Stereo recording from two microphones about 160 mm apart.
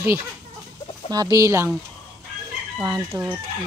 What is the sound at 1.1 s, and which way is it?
Speech, 20° right (ahead or behind).